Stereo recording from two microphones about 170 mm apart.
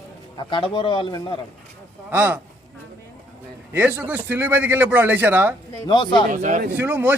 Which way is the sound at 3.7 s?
10° right (ahead or behind).